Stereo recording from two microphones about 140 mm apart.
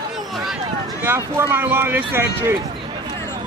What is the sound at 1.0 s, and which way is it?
Speech, 15° right (ahead or behind).